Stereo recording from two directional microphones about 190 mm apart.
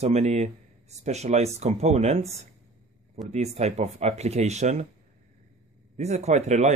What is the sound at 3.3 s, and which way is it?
Speech, 35° right (ahead or behind).